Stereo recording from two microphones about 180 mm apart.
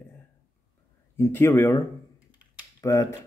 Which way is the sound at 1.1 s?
15° left (ahead or behind).